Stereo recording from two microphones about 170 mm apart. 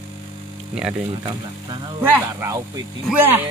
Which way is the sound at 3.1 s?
10° right (ahead or behind).